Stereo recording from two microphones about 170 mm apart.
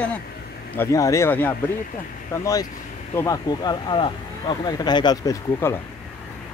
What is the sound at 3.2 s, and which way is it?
Speech, 20° left (ahead or behind).